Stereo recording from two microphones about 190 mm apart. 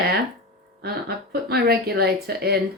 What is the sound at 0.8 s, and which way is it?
Speech, 55° right (ahead or behind).